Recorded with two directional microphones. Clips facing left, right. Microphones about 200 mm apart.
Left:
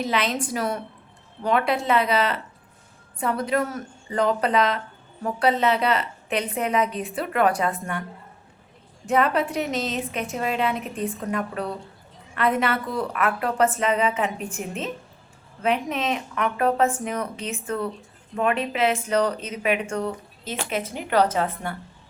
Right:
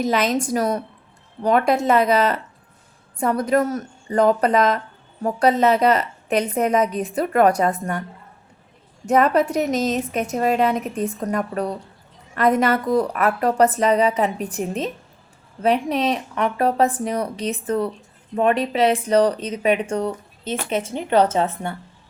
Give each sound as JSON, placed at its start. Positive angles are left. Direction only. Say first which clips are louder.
{"t": 0.0, "sound": "a woman's voice", "louder": "right 5 dB", "side_deg": -45}
{"t": 9.0, "sound": "a woman's voice", "louder": "right 5 dB", "side_deg": -45}